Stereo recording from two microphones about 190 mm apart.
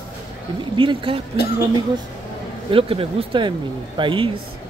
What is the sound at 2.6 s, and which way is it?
Speech, 30° right (ahead or behind).